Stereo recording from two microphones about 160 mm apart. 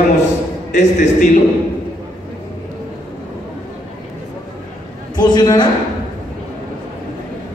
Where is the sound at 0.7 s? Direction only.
50° left (ahead or behind).